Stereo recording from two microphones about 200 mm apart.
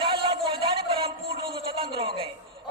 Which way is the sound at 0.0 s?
25° right (ahead or behind).